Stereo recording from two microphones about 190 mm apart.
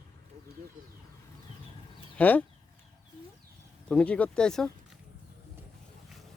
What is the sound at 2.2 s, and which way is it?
Speech, 10° left (ahead or behind).